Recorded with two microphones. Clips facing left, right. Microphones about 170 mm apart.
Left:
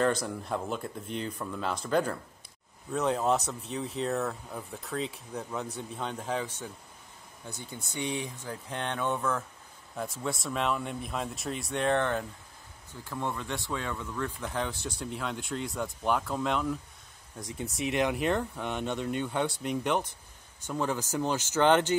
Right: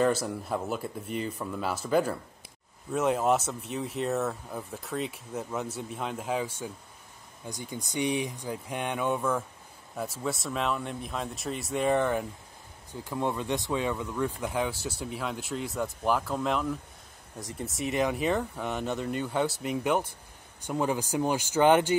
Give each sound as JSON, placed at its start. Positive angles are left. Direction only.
{"t": 0.0, "sound": "speech", "side_deg": -5}